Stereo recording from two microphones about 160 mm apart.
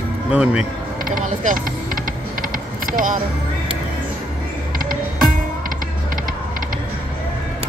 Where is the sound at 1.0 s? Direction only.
55° right (ahead or behind).